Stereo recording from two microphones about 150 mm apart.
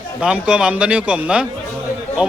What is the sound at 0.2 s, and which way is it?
Speech, 5° right (ahead or behind).